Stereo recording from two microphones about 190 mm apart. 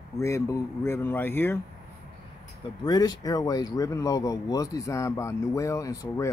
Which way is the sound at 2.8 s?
20° left (ahead or behind).